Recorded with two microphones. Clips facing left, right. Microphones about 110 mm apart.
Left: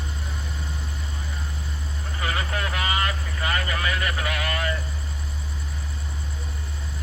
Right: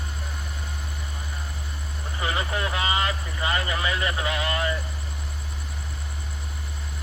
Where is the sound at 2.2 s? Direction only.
20° right (ahead or behind).